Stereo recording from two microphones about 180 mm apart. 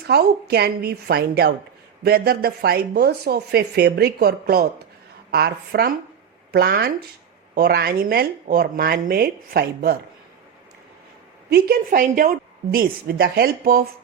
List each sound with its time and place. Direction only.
0.1 s speech: 65° right (ahead or behind)
11.4 s speech: 60° right (ahead or behind)